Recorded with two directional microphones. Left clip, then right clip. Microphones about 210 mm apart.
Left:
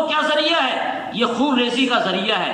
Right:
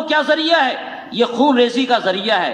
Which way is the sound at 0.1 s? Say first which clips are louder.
Right 7 dB; 35° right (ahead or behind).